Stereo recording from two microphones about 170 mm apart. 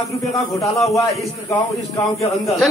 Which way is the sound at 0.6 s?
20° left (ahead or behind).